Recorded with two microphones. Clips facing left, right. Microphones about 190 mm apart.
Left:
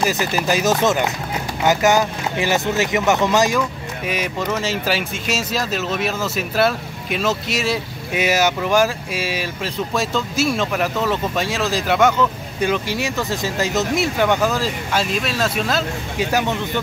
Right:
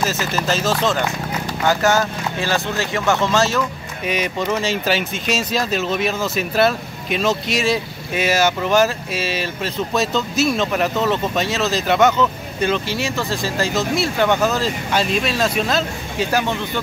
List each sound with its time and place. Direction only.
0.0 s speech: 15° left (ahead or behind)
4.1 s speech: 5° left (ahead or behind)
8.1 s speech: 15° left (ahead or behind)